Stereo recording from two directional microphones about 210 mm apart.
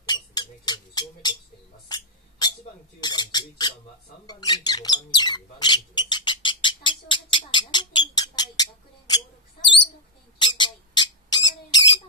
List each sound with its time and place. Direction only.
0.0 s a sound: 20° left (ahead or behind)
4.3 s squawk: 20° left (ahead or behind)
10.4 s squawk: 20° left (ahead or behind)